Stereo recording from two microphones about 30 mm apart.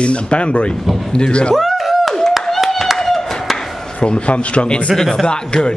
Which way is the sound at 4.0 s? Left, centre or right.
Left.